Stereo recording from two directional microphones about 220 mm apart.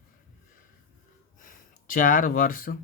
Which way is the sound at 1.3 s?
35° left (ahead or behind).